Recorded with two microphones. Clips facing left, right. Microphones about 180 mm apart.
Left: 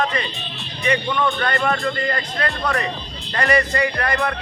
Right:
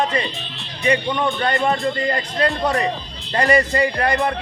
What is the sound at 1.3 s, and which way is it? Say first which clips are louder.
Speech: right 3 dB; 20° right (ahead or behind).